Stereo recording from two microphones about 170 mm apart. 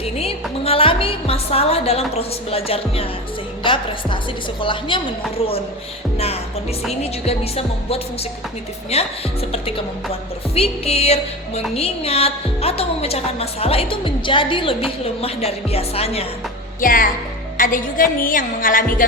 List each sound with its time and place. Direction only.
0.0 s music: 35° left (ahead or behind)
6.1 s music: 35° left (ahead or behind)
16.8 s speech: 55° left (ahead or behind)